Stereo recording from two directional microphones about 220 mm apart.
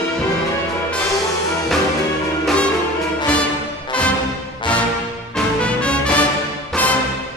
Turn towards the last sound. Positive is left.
turn(degrees=5)  # may be behind; listen again after turning